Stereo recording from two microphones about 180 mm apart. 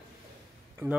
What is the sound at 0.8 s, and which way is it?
Speech, 15° right (ahead or behind).